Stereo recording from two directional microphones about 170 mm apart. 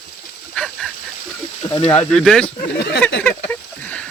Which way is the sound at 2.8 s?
90° left.